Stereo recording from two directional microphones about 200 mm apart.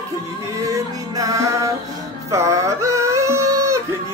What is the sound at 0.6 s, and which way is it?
Music, 15° right (ahead or behind).